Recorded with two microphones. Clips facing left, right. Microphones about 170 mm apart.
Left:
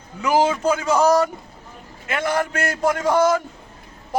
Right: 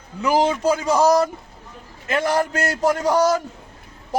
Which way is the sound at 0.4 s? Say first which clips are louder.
Right 1 dB; 35° right (ahead or behind).